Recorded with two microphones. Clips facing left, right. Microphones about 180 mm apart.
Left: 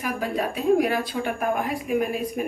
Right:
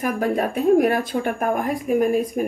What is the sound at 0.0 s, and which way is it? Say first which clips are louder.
A woman's voice: right 5 dB; 50° right (ahead or behind).